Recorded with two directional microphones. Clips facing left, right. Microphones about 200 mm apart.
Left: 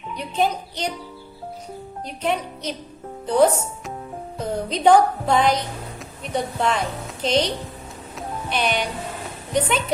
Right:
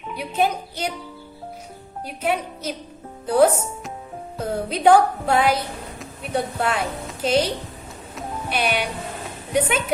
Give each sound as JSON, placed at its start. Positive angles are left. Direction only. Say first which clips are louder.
{"t": 0.1, "sound": "speech", "louder": "even", "side_deg": -10}
{"t": 2.0, "sound": "a woman's voice", "louder": "right 1 dB", "side_deg": -5}
{"t": 8.1, "sound": "music", "louder": "even", "side_deg": -10}
{"t": 9.5, "sound": "speech", "louder": "right 1 dB", "side_deg": -10}